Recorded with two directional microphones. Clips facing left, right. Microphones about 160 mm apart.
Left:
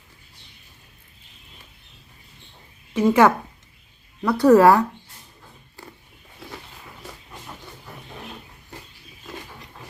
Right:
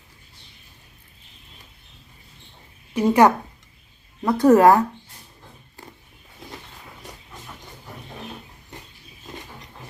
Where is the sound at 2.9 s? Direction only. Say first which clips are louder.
Even; 15° right (ahead or behind).